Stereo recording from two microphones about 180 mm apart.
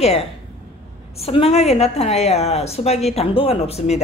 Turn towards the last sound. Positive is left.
turn(degrees=35)  # may be behind; listen again after turning